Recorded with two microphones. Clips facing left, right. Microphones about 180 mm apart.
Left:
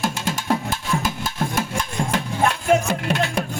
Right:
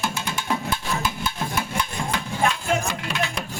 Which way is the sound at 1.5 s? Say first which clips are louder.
Left 2 dB; 45° left (ahead or behind).